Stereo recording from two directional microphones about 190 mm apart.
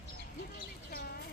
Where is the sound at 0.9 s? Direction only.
50° left (ahead or behind).